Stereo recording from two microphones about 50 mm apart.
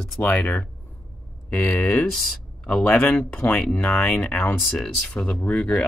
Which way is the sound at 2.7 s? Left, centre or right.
Centre.